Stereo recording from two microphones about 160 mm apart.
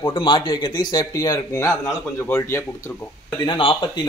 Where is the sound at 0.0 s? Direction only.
30° left (ahead or behind); by 2.6 s 15° left (ahead or behind).